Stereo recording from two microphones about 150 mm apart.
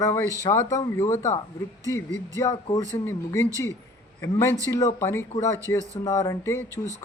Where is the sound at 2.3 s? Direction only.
20° left (ahead or behind).